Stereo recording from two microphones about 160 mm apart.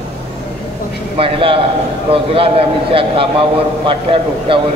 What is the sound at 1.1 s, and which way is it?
A man's voice, 35° right (ahead or behind).